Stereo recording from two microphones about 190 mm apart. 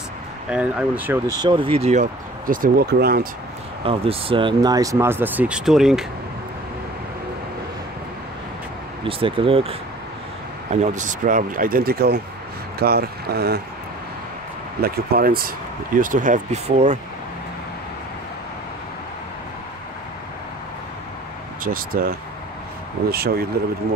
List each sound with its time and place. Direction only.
0.5 s speech: 5° right (ahead or behind)
1.4 s speech: 25° right (ahead or behind); by 3.3 s 55° right (ahead or behind)
3.8 s speech: 30° right (ahead or behind); by 6.0 s centre (ahead or behind)
9.0 s speech: 30° right (ahead or behind); by 13.6 s 55° right (ahead or behind)
14.8 s speech: 50° right (ahead or behind)
21.6 s speech: 50° right (ahead or behind)